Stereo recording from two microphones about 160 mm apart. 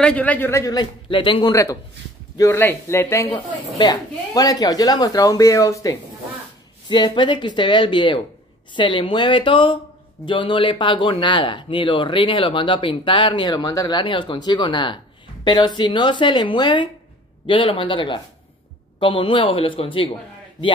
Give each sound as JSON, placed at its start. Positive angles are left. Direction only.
{"t": 0.0, "sound": "speech", "side_deg": 10}
{"t": 1.5, "sound": "a man's voice", "side_deg": 20}
{"t": 3.3, "sound": "speech", "side_deg": 35}